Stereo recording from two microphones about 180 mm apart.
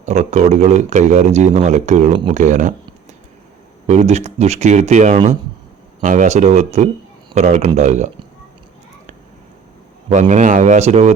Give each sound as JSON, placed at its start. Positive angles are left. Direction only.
{"t": 0.0, "sound": "speech", "side_deg": -40}
{"t": 3.8, "sound": "speech", "side_deg": -40}
{"t": 10.1, "sound": "a man's voice", "side_deg": -40}